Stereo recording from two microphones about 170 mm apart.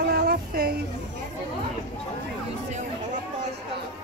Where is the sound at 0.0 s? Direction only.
70° right (ahead or behind).